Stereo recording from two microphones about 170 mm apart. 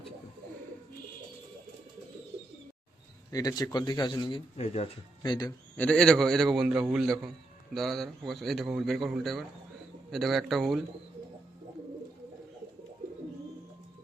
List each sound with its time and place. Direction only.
3.3 s speech: 20° left (ahead or behind); by 4.9 s 40° left (ahead or behind)
5.2 s speech: 25° left (ahead or behind)
5.7 s a man's voice: 5° left (ahead or behind)